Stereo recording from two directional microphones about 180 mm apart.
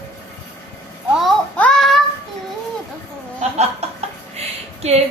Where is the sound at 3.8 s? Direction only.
35° right (ahead or behind).